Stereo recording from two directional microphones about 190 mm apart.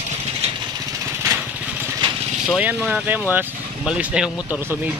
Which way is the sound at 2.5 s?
5° right (ahead or behind).